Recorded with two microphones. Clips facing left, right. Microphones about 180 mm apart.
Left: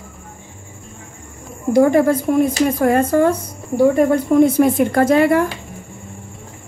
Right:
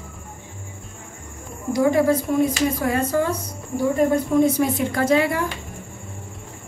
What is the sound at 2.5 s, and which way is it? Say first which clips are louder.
Speech: left 6 dB; 50° left (ahead or behind).